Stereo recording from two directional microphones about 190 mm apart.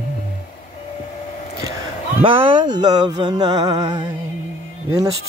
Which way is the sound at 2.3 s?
25° right (ahead or behind).